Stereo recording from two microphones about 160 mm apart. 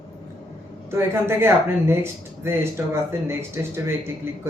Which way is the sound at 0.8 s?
15° right (ahead or behind).